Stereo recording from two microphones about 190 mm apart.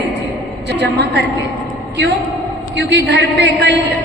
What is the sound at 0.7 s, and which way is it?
Speech, 65° right (ahead or behind).